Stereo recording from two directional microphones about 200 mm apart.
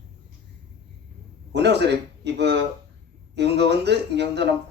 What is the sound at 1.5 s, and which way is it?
A man's voice, 60° right (ahead or behind).